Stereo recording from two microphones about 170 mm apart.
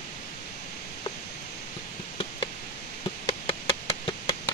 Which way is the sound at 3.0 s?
30° left (ahead or behind).